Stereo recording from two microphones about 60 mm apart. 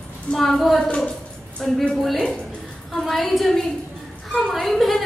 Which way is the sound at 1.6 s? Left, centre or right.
Centre.